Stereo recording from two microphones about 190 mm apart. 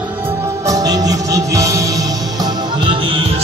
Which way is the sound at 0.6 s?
20° right (ahead or behind).